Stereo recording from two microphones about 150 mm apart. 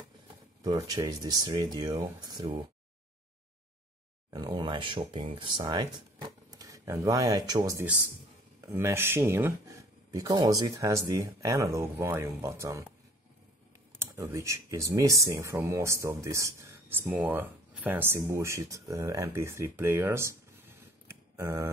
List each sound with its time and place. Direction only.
0.6 s speech: 25° right (ahead or behind)
4.3 s speech: 30° right (ahead or behind)
13.9 s speech: 15° right (ahead or behind)